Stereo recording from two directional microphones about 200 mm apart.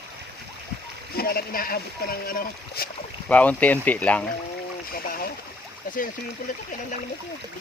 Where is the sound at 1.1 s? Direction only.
50° left (ahead or behind).